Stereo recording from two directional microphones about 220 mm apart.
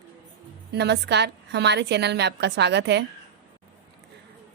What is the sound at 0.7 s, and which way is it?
A woman's voice, 50° right (ahead or behind).